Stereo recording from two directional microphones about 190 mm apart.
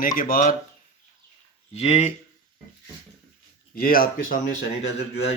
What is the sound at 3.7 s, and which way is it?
Speech, 50° left (ahead or behind).